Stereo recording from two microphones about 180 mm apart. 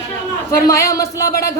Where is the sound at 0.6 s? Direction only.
20° left (ahead or behind).